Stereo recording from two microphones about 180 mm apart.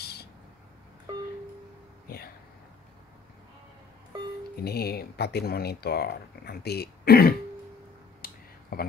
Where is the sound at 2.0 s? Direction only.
55° left (ahead or behind).